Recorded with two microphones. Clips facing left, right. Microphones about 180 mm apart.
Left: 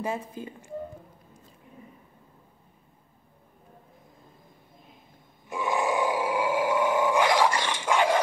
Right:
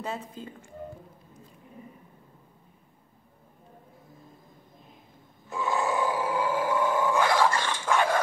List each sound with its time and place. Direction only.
0.0 s speech: 10° left (ahead or behind)
5.5 s grunt: 15° left (ahead or behind)